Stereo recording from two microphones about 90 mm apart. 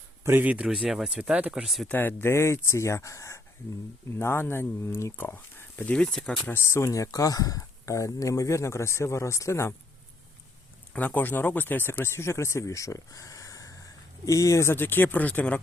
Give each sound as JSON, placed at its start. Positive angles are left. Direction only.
{"t": 0.3, "sound": "speech", "side_deg": -20}
{"t": 1.9, "sound": "speech", "side_deg": 25}
{"t": 6.5, "sound": "speech", "side_deg": 30}
{"t": 10.9, "sound": "speech", "side_deg": 20}